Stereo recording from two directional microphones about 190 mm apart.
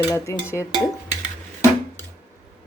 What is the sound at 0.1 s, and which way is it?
Speech, 15° left (ahead or behind).